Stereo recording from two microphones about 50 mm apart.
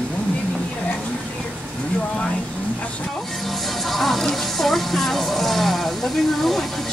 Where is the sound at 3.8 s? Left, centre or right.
Centre.